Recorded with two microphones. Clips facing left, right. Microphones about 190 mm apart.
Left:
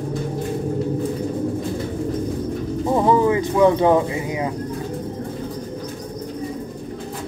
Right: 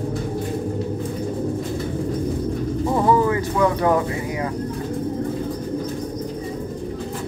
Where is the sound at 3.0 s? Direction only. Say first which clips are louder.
Left 2 dB; 20° left (ahead or behind).